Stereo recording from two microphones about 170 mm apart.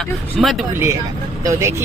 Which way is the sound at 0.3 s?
Centre (ahead or behind).